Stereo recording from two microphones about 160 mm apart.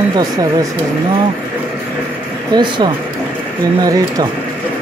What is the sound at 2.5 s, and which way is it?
Speech, 30° right (ahead or behind).